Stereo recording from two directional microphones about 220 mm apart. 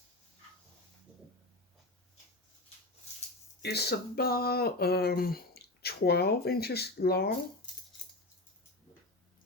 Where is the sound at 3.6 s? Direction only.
45° left (ahead or behind).